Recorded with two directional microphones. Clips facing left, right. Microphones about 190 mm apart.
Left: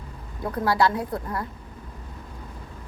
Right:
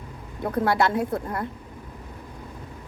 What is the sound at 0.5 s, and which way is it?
Speech, 25° right (ahead or behind).